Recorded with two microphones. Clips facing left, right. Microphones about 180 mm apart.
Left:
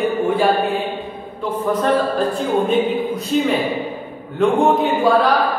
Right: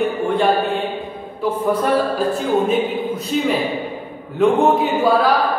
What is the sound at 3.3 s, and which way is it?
Speech, centre (ahead or behind).